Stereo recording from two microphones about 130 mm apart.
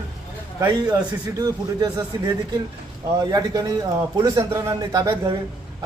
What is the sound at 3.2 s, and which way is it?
A man's voice, 30° right (ahead or behind).